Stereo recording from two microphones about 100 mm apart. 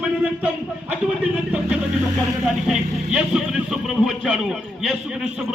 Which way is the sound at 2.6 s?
5° right (ahead or behind).